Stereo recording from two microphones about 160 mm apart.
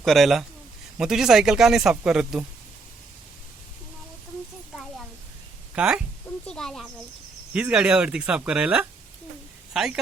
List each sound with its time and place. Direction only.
0.0 s speech: centre (ahead or behind)
4.7 s speech: centre (ahead or behind)
6.4 s speech: 5° left (ahead or behind)